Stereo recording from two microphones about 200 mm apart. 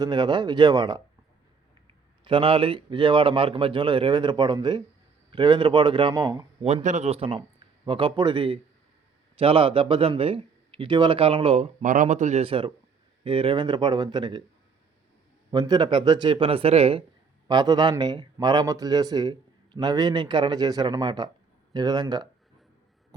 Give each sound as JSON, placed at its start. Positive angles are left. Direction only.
{"t": 0.0, "sound": "speech", "side_deg": -20}
{"t": 2.2, "sound": "speech", "side_deg": -25}
{"t": 6.7, "sound": "a man's voice", "side_deg": -35}
{"t": 15.5, "sound": "speech", "side_deg": -20}